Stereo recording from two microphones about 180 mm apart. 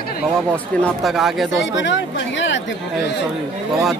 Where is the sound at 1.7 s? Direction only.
90° left.